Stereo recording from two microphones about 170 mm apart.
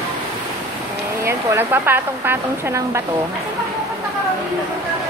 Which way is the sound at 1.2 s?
15° right (ahead or behind).